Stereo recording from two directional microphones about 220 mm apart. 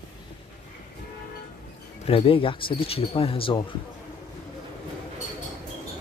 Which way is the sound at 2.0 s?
25° left (ahead or behind).